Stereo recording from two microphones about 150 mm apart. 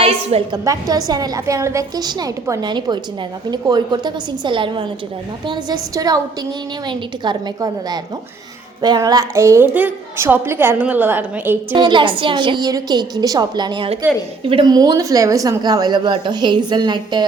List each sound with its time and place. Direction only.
0.0 s a sound: 40° right (ahead or behind)
0.5 s a woman's voice: 25° right (ahead or behind)
11.7 s a woman's voice: 30° right (ahead or behind)